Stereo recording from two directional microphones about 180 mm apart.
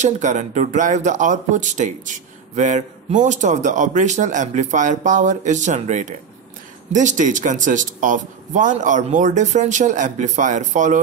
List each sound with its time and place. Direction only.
0.0 s speech: 40° right (ahead or behind)